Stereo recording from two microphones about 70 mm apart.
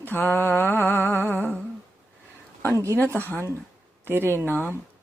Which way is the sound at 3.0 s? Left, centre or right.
Right.